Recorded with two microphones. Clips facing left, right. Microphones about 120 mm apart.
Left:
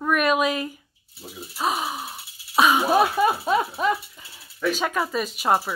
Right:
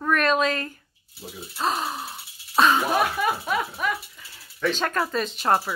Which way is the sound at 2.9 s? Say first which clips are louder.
Left 4 dB; 25° left (ahead or behind).